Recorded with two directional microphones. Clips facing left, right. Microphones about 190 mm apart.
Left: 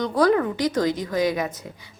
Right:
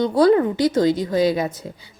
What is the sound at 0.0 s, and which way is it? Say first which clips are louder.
A woman's voice: right 4 dB; 30° right (ahead or behind).